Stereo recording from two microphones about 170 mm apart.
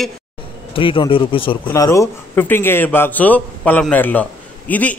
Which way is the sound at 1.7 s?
15° left (ahead or behind).